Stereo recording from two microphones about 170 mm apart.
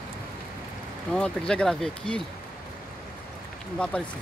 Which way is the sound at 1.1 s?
5° left (ahead or behind).